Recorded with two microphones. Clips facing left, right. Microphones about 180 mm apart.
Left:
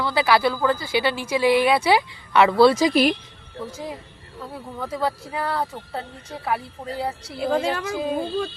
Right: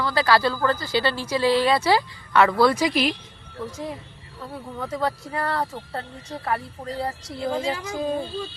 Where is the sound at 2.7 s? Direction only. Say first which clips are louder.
Left 4 dB; 45° left (ahead or behind).